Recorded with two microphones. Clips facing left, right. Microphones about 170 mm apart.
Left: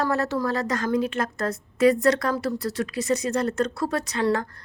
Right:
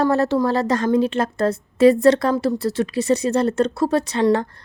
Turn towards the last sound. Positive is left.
turn(degrees=-25)  # may be behind; listen again after turning